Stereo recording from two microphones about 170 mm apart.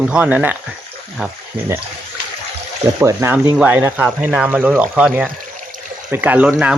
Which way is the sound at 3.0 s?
15° right (ahead or behind).